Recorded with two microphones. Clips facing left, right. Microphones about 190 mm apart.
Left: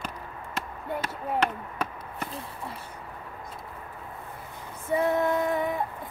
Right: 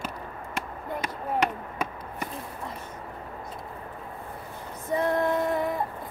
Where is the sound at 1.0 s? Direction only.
10° right (ahead or behind).